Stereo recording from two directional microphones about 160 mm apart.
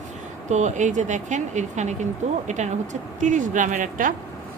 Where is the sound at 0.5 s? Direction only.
50° right (ahead or behind).